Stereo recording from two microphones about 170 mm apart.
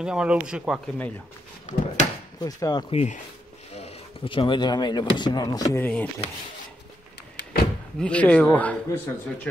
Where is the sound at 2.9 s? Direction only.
40° left (ahead or behind); by 5.8 s 20° left (ahead or behind).